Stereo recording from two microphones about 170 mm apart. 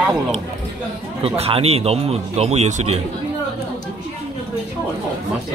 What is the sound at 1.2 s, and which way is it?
Speech, 35° right (ahead or behind).